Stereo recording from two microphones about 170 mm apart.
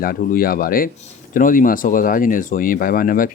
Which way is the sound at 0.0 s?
60° left (ahead or behind).